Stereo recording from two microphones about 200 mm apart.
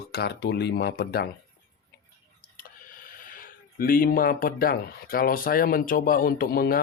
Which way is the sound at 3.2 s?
45° left (ahead or behind).